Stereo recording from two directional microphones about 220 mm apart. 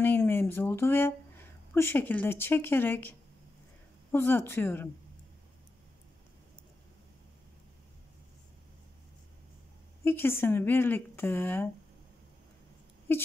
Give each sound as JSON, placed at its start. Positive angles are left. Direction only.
{"t": 0.0, "sound": "speech", "side_deg": 10}
{"t": 10.0, "sound": "speech", "side_deg": 10}
{"t": 13.1, "sound": "speech", "side_deg": 10}